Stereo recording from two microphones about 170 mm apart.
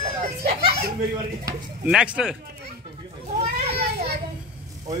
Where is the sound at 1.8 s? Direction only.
5° right (ahead or behind).